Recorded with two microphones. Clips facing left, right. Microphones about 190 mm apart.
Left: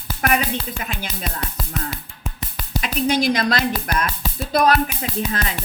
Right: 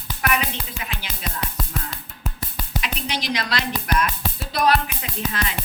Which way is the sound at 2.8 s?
50° left (ahead or behind).